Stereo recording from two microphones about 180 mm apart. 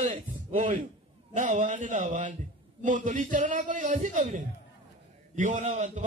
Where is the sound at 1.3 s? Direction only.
45° right (ahead or behind).